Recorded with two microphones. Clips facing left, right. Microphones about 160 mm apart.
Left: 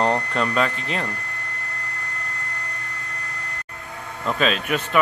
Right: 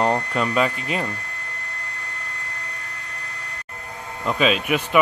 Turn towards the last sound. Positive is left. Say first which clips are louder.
# right 2 dB
turn(degrees=-5)  # may be behind; listen again after turning